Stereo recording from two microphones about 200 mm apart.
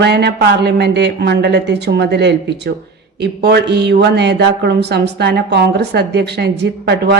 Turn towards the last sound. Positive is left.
turn(degrees=-55)  # may be behind; listen again after turning